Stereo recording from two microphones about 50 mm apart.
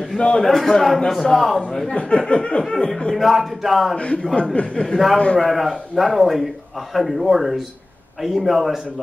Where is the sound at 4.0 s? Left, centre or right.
Left.